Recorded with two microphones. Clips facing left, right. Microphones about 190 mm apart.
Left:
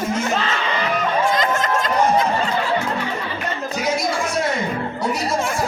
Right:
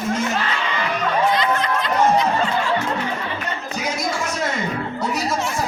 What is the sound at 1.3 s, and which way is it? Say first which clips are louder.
Snicker: even; 45° left (ahead or behind).